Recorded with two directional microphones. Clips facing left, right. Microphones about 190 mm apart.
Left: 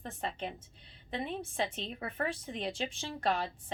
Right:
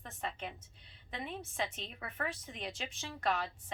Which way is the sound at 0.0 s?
30° left (ahead or behind).